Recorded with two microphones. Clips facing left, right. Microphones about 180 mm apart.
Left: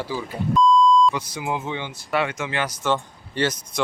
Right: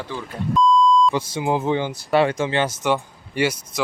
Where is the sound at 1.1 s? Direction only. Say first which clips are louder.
Right 5 dB; 25° right (ahead or behind).